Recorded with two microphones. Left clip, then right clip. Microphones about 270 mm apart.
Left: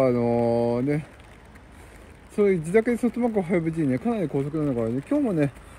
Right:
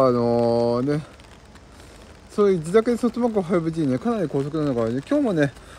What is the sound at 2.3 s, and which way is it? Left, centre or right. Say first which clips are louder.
Speech: right 2 dB; centre.